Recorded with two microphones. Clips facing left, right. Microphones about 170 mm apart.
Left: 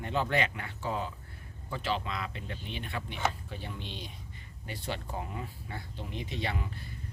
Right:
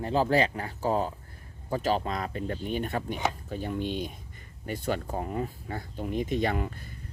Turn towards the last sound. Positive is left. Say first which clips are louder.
# right 7 dB
turn(degrees=-50)  # may be behind; listen again after turning